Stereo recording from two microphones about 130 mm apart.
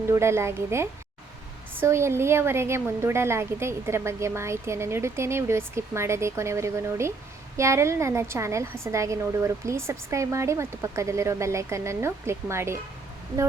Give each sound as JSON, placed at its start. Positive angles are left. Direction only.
{"t": 0.1, "sound": "a woman's voice", "side_deg": -20}